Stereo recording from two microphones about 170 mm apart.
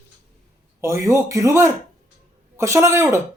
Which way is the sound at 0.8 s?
15° right (ahead or behind).